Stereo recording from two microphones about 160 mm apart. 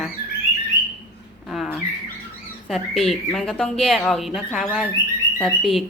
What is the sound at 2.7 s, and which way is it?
Speech, centre (ahead or behind).